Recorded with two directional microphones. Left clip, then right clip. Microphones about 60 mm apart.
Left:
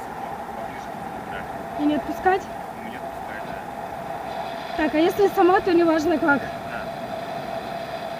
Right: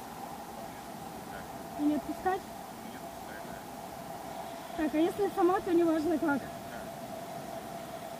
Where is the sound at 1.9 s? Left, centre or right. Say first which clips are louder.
Left 11 dB; centre.